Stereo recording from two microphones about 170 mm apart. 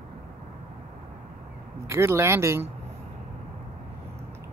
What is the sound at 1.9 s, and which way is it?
Speech, 15° right (ahead or behind).